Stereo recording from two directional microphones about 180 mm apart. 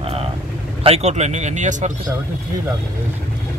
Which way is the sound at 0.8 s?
35° right (ahead or behind).